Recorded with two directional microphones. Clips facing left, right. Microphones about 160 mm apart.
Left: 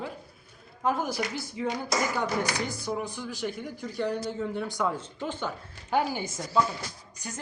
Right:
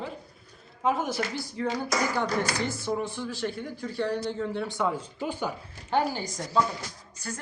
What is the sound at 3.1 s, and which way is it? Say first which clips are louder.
Speech: right 2 dB; centre (ahead or behind).